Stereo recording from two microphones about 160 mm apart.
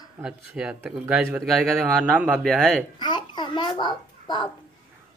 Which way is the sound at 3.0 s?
30° left (ahead or behind).